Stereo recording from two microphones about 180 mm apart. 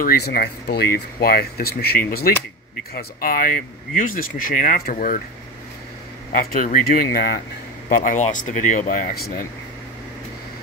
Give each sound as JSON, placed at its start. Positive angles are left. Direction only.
{"t": 0.0, "sound": "speech", "side_deg": 55}
{"t": 6.3, "sound": "speech", "side_deg": 50}
{"t": 7.9, "sound": "speech", "side_deg": 45}